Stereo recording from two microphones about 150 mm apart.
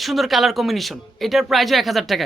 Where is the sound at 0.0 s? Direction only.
Centre (ahead or behind).